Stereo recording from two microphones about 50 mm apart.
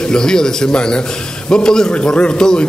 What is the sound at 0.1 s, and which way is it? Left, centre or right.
A man's voice, centre.